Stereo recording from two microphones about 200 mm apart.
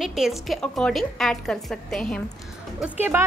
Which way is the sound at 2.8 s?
10° right (ahead or behind).